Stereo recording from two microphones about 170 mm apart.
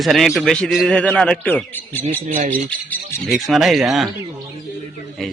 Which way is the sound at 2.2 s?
45° right (ahead or behind).